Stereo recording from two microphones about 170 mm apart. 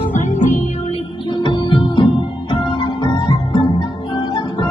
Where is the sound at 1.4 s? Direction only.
30° left (ahead or behind).